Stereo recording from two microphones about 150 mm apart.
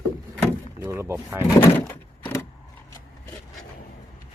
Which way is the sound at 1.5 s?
15° left (ahead or behind).